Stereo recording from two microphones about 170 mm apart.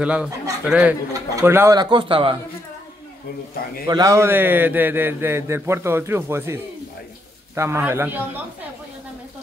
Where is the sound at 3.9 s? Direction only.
20° right (ahead or behind).